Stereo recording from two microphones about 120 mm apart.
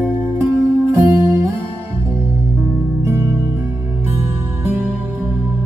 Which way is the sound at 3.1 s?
25° right (ahead or behind).